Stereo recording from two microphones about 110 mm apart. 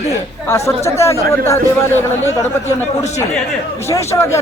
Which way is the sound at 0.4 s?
25° left (ahead or behind).